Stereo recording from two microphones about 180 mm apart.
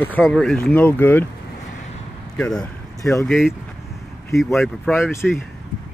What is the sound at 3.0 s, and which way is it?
Speech, 15° left (ahead or behind).